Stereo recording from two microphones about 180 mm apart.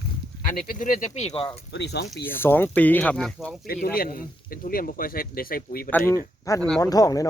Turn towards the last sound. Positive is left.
turn(degrees=20)  # may be behind; listen again after turning